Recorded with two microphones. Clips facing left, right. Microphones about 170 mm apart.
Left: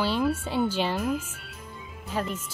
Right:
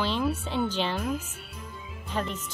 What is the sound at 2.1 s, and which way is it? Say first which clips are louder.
Speech: left 1 dB; 5° left (ahead or behind).